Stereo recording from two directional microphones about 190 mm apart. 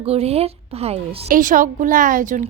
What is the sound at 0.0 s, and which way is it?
Speech, 30° right (ahead or behind).